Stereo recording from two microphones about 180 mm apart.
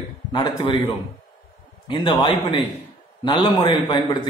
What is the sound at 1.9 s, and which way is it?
A man's voice, 25° left (ahead or behind).